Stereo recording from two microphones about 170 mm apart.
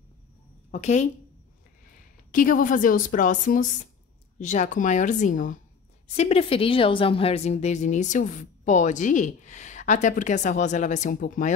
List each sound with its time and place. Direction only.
0.7 s speech: 45° left (ahead or behind)
2.3 s a woman's voice: 55° left (ahead or behind)
6.1 s a woman's voice: 35° left (ahead or behind)